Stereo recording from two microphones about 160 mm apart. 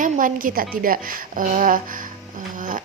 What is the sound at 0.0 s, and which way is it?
A woman's voice, 55° right (ahead or behind).